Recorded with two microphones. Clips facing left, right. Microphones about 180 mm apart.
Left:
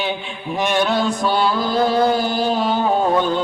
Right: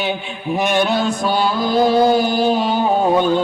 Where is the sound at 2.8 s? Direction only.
15° right (ahead or behind).